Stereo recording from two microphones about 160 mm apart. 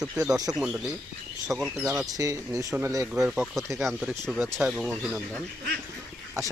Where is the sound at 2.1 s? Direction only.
20° right (ahead or behind).